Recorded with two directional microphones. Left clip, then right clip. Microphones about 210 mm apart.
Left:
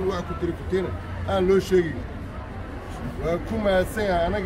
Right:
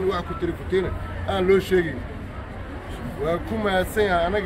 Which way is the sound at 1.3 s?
15° left (ahead or behind).